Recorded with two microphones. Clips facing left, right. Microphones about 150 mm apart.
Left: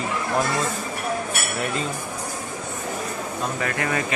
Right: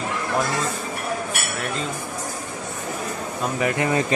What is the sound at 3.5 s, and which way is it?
Speech, 20° right (ahead or behind).